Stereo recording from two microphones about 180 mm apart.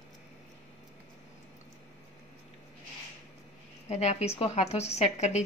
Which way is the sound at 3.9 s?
40° left (ahead or behind).